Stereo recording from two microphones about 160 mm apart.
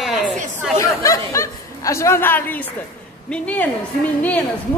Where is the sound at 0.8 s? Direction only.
20° left (ahead or behind).